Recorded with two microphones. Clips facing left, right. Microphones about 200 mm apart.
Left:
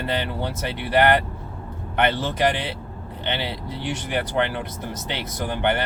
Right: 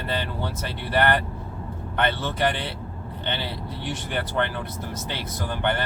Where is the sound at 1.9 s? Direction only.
20° left (ahead or behind).